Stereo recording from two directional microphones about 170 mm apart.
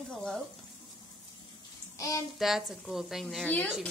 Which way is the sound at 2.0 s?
20° left (ahead or behind).